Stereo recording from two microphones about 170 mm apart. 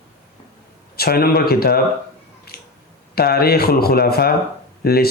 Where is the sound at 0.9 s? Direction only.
65° left (ahead or behind).